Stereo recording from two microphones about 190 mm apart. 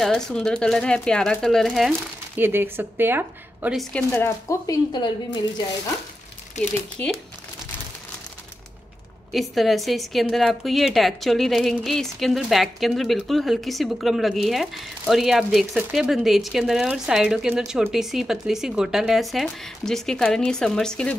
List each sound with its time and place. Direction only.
0.0 s a woman's voice: 5° left (ahead or behind)
2.3 s speech: 10° right (ahead or behind)
3.7 s speech: 10° left (ahead or behind)
9.3 s a woman's voice: centre (ahead or behind)